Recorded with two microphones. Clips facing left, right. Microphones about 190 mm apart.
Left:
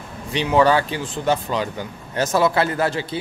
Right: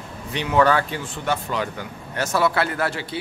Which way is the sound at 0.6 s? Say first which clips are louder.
Left 1 dB; 15° left (ahead or behind).